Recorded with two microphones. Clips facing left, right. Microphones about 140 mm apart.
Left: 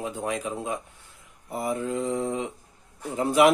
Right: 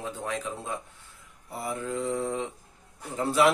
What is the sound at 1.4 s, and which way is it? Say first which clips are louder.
Mantra: left 5 dB; 20° left (ahead or behind).